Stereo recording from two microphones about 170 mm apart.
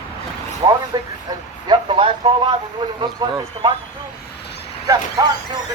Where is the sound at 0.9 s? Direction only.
25° right (ahead or behind).